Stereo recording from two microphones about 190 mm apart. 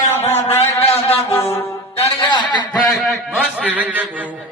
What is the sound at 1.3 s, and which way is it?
Music, 15° left (ahead or behind).